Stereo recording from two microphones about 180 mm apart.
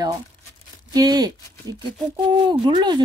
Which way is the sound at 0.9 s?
20° right (ahead or behind).